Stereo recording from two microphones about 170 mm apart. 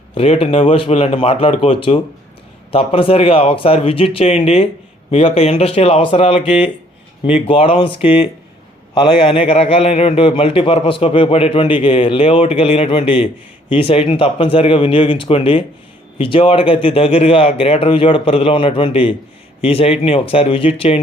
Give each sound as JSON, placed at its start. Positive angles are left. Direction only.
{"t": 0.1, "sound": "a man's voice", "side_deg": 35}